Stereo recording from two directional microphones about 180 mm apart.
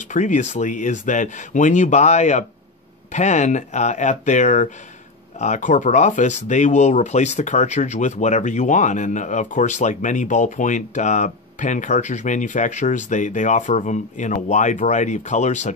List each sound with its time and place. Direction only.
0.1 s speech: 40° left (ahead or behind)